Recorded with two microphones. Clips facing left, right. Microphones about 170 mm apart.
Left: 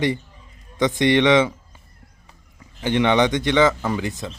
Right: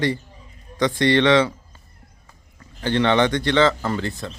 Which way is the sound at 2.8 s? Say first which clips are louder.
Even; 15° left (ahead or behind).